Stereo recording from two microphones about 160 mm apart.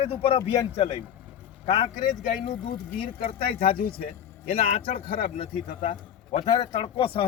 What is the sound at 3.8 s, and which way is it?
Speech, 70° left (ahead or behind).